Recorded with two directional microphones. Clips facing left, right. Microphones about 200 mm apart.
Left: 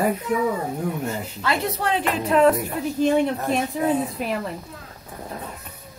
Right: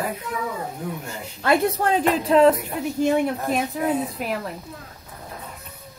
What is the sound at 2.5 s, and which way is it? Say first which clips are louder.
A woman's voice: left 1 dB; 10° right (ahead or behind).